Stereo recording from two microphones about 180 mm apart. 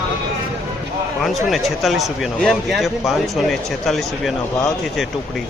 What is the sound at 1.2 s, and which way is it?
Speech, centre (ahead or behind).